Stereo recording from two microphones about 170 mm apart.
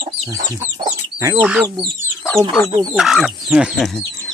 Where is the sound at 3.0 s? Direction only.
Centre (ahead or behind).